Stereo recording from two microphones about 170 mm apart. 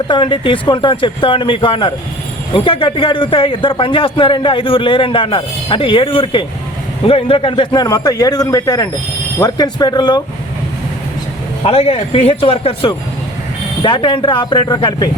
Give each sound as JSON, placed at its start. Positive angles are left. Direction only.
{"t": 0.1, "sound": "a man's voice", "side_deg": 30}
{"t": 11.6, "sound": "a man's voice", "side_deg": 35}